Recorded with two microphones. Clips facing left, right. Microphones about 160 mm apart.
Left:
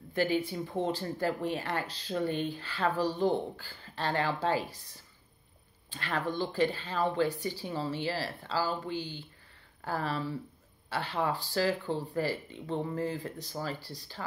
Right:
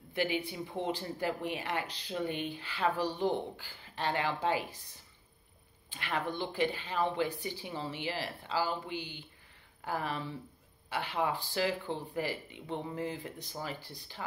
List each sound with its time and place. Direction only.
0.1 s speech: 15° right (ahead or behind)
5.9 s speech: 15° right (ahead or behind)